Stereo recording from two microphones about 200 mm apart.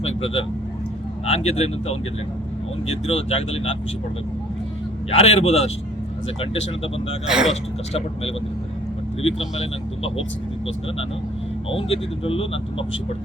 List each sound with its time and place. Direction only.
0.0 s vehicle: 30° left (ahead or behind)
1.3 s speech: 30° left (ahead or behind)
5.1 s speech: 30° left (ahead or behind)
7.3 s speech: 5° right (ahead or behind)
7.5 s speech: 30° left (ahead or behind)
11.7 s speech: 30° left (ahead or behind)